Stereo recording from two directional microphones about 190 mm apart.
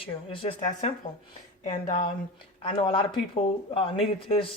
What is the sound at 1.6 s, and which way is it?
Speech, 40° left (ahead or behind).